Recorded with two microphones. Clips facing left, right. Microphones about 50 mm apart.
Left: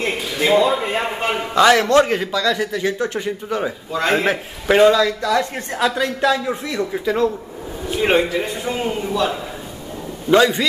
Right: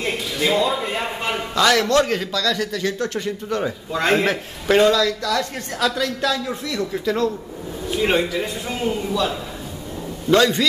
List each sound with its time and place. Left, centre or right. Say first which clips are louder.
0.0 s a man's voice: left 2 dB; centre